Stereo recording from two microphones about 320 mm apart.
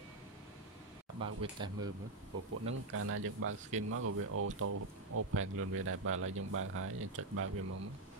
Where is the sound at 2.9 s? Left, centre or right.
Right.